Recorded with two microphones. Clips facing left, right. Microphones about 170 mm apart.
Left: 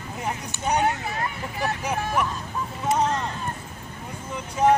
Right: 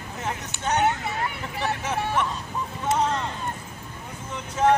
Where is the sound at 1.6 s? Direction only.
10° left (ahead or behind).